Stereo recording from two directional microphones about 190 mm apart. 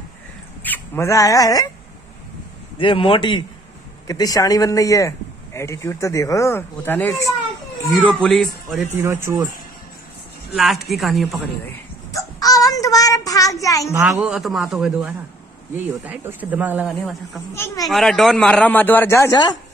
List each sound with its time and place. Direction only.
0.6 s speech: 10° left (ahead or behind)
2.8 s a man's voice: 25° left (ahead or behind); by 8.8 s centre (ahead or behind)
8.9 s speech: 15° right (ahead or behind)
10.5 s a man's voice: centre (ahead or behind)
12.1 s baby cry: 20° left (ahead or behind)
12.7 s a child's voice: 20° left (ahead or behind)
14.0 s a man's voice: 5° right (ahead or behind); by 19.5 s 15° left (ahead or behind)